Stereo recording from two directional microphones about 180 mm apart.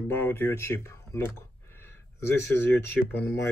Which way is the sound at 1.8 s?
15° left (ahead or behind).